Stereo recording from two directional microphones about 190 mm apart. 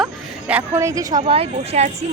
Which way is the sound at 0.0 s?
5° right (ahead or behind).